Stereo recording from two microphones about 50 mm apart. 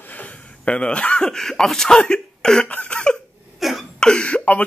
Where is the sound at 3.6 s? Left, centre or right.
Centre.